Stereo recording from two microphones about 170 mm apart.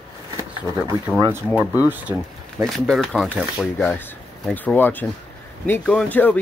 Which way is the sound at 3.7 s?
10° left (ahead or behind).